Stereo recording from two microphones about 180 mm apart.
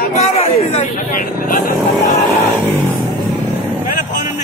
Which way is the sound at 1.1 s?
50° left (ahead or behind).